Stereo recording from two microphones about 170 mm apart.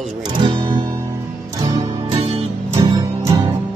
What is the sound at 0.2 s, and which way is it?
Guitar, 30° right (ahead or behind).